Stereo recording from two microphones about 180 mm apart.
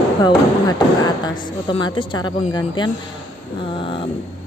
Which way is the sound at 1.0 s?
25° left (ahead or behind).